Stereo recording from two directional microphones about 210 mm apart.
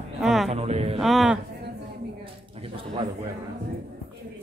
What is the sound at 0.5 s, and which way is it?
Music, 30° right (ahead or behind).